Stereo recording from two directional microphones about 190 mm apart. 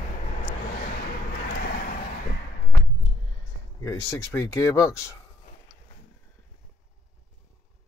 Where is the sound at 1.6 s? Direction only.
55° left (ahead or behind).